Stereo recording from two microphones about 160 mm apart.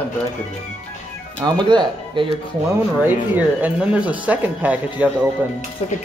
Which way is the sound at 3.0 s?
10° right (ahead or behind).